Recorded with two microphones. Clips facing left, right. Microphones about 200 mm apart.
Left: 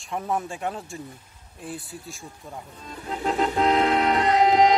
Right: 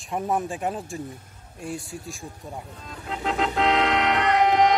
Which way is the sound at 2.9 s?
5° left (ahead or behind).